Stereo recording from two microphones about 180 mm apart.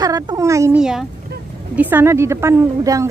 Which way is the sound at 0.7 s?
5° right (ahead or behind).